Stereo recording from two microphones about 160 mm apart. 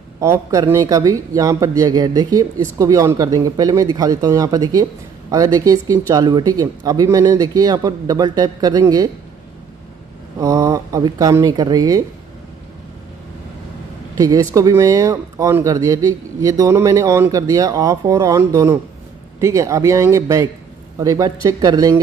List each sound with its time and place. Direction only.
0.2 s speech: 20° right (ahead or behind)
10.4 s speech: 20° right (ahead or behind)
14.1 s speech: 25° right (ahead or behind)